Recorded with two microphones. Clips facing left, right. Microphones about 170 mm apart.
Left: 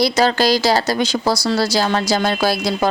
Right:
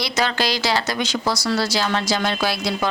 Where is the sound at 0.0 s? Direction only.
35° left (ahead or behind).